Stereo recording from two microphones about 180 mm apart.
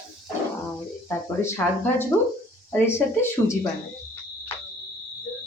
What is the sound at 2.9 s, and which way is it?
Speech, 15° left (ahead or behind).